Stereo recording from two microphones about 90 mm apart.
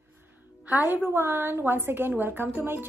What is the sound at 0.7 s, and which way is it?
Speech, 20° right (ahead or behind).